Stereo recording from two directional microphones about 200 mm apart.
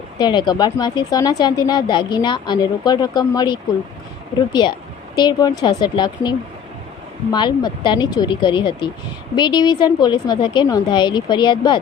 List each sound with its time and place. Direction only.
0.2 s speech: 20° left (ahead or behind)